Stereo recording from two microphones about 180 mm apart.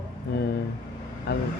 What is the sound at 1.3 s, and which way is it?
Speech, 65° left (ahead or behind).